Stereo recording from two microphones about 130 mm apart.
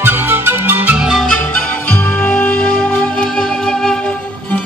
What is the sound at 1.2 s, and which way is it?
Music, 5° left (ahead or behind).